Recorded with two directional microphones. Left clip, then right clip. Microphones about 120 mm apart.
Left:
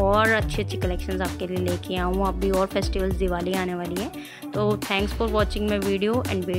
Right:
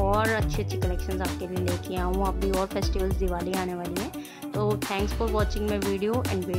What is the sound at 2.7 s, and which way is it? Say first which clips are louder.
Speech: left 3 dB; 20° left (ahead or behind).